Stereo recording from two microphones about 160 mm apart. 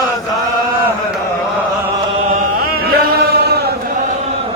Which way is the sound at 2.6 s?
80° right.